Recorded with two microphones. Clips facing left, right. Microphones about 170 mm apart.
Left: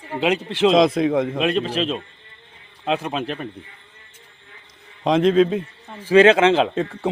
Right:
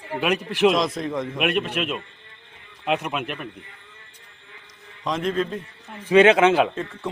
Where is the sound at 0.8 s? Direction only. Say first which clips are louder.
Left 8 dB; 75° left (ahead or behind); by 1.4 s 60° left (ahead or behind).